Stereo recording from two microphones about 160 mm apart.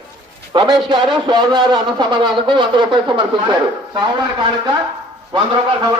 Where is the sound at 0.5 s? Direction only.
30° right (ahead or behind).